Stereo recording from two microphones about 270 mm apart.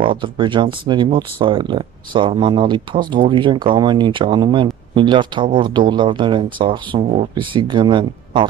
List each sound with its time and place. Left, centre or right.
0.0 s speech: centre